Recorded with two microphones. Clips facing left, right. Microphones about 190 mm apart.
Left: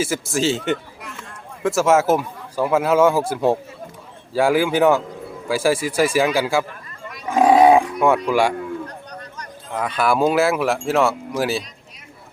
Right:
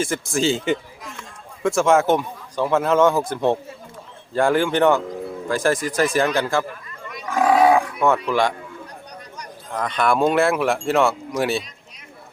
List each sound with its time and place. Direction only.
0.0 s speech: 5° left (ahead or behind)
7.3 s roaring cats: 25° left (ahead or behind)
8.0 s speech: 10° left (ahead or behind)
9.7 s speech: 5° left (ahead or behind)